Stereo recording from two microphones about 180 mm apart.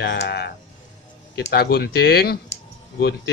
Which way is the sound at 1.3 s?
65° left (ahead or behind).